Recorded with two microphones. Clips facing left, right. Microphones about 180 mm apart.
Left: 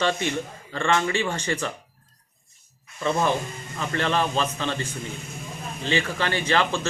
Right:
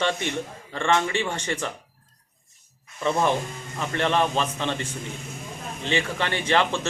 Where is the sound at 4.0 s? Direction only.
20° right (ahead or behind).